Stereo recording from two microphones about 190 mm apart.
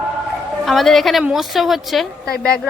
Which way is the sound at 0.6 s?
Centre (ahead or behind).